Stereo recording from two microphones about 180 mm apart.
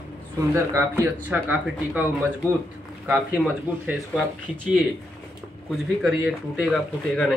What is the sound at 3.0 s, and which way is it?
Speech, 10° right (ahead or behind).